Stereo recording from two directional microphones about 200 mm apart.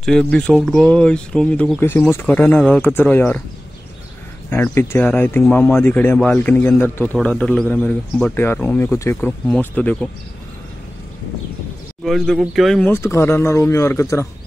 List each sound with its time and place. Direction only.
0.0 s speech: 5° left (ahead or behind)
4.5 s speech: 10° left (ahead or behind)
12.0 s speech: centre (ahead or behind)